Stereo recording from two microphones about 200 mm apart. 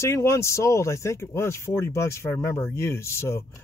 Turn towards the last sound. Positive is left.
turn(degrees=15)  # may be behind; listen again after turning